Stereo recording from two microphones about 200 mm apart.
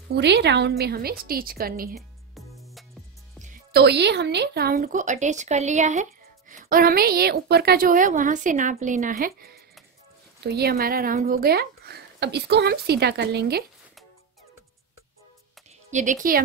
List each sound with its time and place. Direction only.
0.1 s speech: 55° right (ahead or behind)
2.0 s music: centre (ahead or behind)
3.7 s speech: 55° right (ahead or behind)
15.9 s speech: 40° right (ahead or behind)